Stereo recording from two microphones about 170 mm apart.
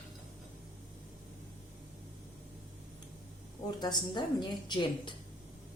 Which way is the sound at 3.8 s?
25° left (ahead or behind).